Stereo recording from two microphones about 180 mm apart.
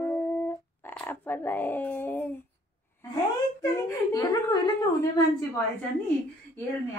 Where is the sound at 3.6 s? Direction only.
15° left (ahead or behind).